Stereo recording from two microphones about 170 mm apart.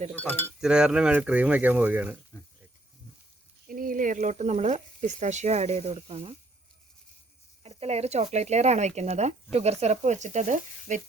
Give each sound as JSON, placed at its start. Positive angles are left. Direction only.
{"t": 0.2, "sound": "speech", "side_deg": 10}
{"t": 0.6, "sound": "speech", "side_deg": -5}
{"t": 3.7, "sound": "speech", "side_deg": -55}
{"t": 7.6, "sound": "speech", "side_deg": -35}